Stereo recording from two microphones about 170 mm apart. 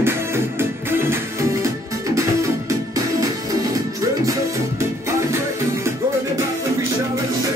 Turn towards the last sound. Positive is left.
turn(degrees=-15)  # may be behind; listen again after turning